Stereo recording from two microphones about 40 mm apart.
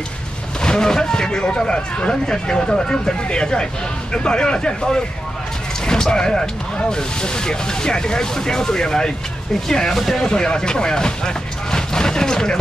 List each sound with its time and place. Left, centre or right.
0.6 s speech: centre
10.3 s speech: centre